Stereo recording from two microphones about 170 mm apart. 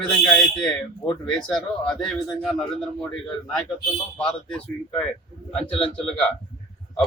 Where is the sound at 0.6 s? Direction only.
25° left (ahead or behind).